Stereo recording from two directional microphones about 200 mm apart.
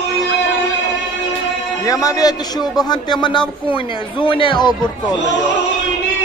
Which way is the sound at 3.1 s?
25° left (ahead or behind).